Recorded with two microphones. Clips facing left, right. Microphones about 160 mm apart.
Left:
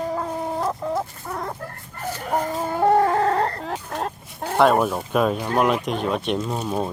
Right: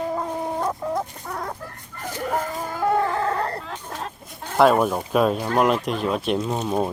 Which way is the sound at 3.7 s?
50° left (ahead or behind).